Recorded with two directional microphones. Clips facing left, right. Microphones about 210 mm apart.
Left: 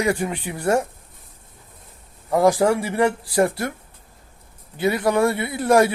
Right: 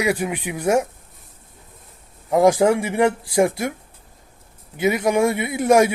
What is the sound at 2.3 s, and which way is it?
A man's voice, 15° right (ahead or behind).